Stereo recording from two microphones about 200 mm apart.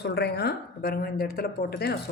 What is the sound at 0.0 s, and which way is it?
A woman's voice, 55° left (ahead or behind).